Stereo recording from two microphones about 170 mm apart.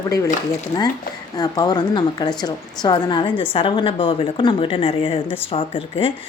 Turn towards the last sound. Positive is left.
turn(degrees=35)  # may be behind; listen again after turning